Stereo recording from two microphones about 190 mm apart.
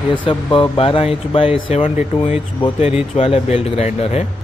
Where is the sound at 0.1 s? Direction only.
25° left (ahead or behind).